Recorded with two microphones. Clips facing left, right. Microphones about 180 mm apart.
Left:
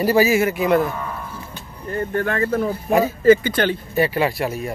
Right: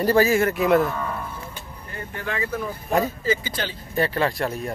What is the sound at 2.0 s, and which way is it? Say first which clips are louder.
Speech: left 8 dB; 50° left (ahead or behind).